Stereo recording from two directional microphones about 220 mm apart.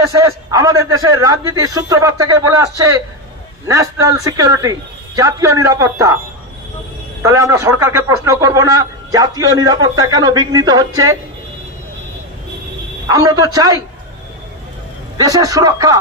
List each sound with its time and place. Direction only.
0.0 s speech: 15° right (ahead or behind)
7.2 s speech: 15° right (ahead or behind)
13.1 s speech: 15° right (ahead or behind)
15.1 s speech: 15° right (ahead or behind)